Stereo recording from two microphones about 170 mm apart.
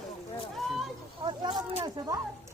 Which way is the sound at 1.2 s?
25° right (ahead or behind).